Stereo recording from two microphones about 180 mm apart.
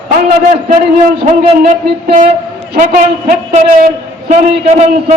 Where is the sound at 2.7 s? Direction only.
45° right (ahead or behind).